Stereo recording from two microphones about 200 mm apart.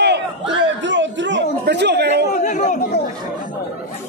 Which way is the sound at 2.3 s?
35° left (ahead or behind).